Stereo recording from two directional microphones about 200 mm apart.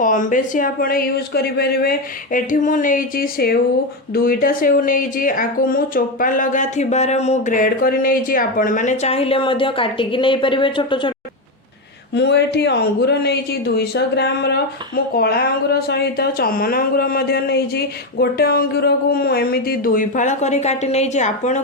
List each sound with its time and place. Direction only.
0.0 s speech: 40° left (ahead or behind); by 11.1 s 25° left (ahead or behind)
12.1 s speech: 55° left (ahead or behind); by 21.6 s 35° left (ahead or behind)